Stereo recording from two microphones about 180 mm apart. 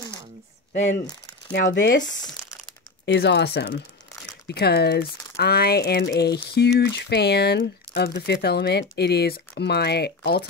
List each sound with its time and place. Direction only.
1.5 s speech: 60° left (ahead or behind)
3.1 s speech: 75° left (ahead or behind)